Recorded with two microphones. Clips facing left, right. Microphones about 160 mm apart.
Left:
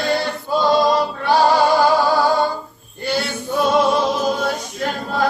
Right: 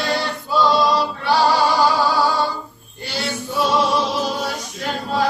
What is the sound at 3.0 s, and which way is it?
Singing, 55° left (ahead or behind).